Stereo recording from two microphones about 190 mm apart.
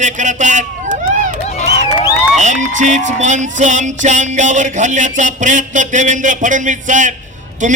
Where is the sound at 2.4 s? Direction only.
40° right (ahead or behind).